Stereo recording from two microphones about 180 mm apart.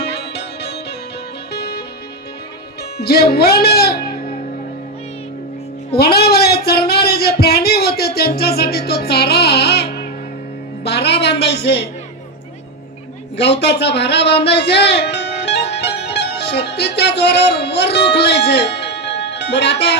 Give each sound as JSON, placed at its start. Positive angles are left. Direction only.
{"t": 0.0, "sound": "music", "side_deg": 65}
{"t": 3.0, "sound": "speech", "side_deg": 60}
{"t": 6.0, "sound": "a sound", "side_deg": 60}
{"t": 10.8, "sound": "a woman's voice", "side_deg": 70}
{"t": 13.3, "sound": "speech", "side_deg": 70}
{"t": 15.8, "sound": "music", "side_deg": 65}